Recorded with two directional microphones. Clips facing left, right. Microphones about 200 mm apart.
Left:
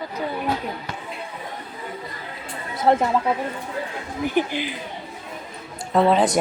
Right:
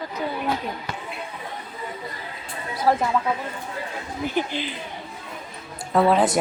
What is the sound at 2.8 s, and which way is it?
Speech, 25° left (ahead or behind).